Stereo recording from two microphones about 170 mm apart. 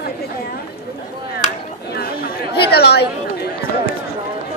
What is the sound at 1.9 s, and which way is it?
Chatter, 65° left (ahead or behind).